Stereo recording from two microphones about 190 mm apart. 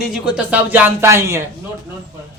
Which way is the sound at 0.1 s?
5° right (ahead or behind).